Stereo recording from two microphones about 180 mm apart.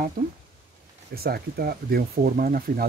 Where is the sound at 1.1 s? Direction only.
60° right (ahead or behind).